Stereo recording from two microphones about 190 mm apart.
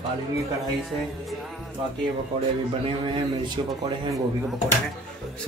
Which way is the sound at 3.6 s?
25° right (ahead or behind).